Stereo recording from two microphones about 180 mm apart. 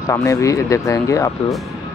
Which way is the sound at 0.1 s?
15° left (ahead or behind).